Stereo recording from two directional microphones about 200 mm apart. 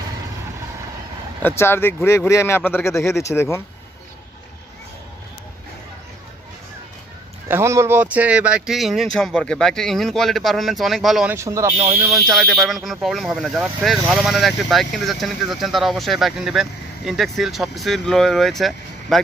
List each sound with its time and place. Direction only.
1.4 s speech: 10° left (ahead or behind)
7.4 s speech: 15° right (ahead or behind)
11.3 s speech: 15° right (ahead or behind)
11.7 s speech: 30° right (ahead or behind)
12.0 s speech: 15° right (ahead or behind)
12.3 s speech: centre (ahead or behind)